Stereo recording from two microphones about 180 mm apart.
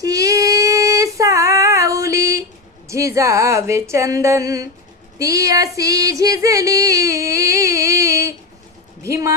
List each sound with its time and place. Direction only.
0.0 s female singing: 20° right (ahead or behind)
2.8 s speech: 15° right (ahead or behind)
5.7 s a sound: 20° right (ahead or behind)
9.0 s speech: 15° right (ahead or behind)